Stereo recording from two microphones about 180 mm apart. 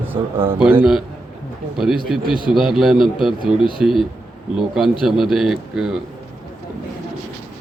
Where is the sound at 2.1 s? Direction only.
5° right (ahead or behind).